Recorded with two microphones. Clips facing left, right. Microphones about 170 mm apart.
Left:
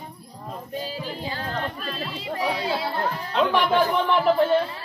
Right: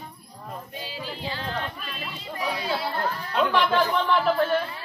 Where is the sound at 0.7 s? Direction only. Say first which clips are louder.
Left 7 dB; 40° left (ahead or behind); by 2.9 s 25° left (ahead or behind).